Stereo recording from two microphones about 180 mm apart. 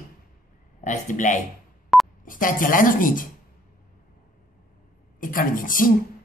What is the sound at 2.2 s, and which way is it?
Speech, 50° left (ahead or behind).